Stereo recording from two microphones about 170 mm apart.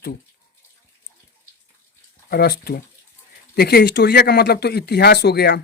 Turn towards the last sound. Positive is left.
turn(degrees=75)  # may be behind; listen again after turning